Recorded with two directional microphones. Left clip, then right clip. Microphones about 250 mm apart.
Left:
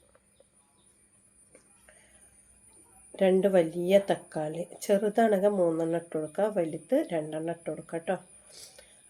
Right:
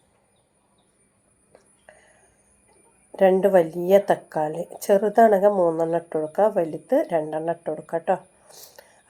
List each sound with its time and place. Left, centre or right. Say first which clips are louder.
3.2 s speech: right 7 dB; centre
4.4 s speech: right 7 dB; right
4.8 s speech: right 9 dB; centre
8.0 s a sound: right 8 dB; centre